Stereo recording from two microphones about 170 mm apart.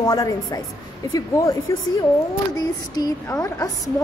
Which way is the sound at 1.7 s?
20° left (ahead or behind).